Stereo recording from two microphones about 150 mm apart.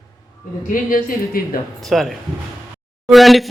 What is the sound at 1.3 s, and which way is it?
Speech, 75° left (ahead or behind).